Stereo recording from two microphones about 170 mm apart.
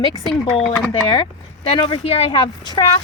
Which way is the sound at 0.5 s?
Centre (ahead or behind).